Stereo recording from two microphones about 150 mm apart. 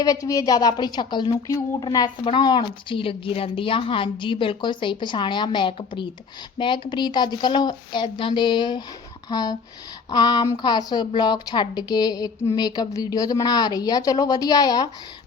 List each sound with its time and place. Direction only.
0.0 s a woman's voice: 25° left (ahead or behind)